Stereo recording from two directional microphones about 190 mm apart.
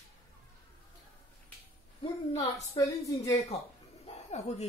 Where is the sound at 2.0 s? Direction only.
20° left (ahead or behind).